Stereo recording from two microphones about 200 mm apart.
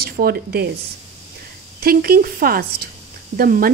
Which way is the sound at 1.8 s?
50° right (ahead or behind).